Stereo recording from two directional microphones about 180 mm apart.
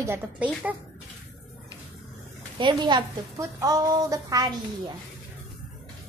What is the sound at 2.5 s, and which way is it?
A woman's voice, 25° right (ahead or behind).